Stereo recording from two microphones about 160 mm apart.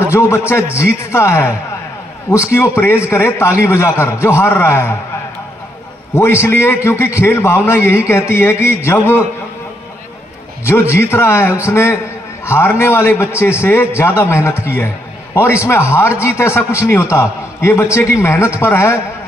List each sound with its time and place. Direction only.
0.1 s a man's voice: 15° left (ahead or behind)
6.1 s a man's voice: 15° left (ahead or behind)
10.6 s a man's voice: 15° left (ahead or behind)